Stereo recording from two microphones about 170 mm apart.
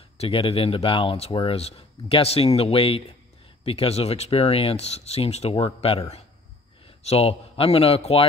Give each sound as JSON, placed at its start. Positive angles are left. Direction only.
{"t": 0.2, "sound": "speech", "side_deg": 35}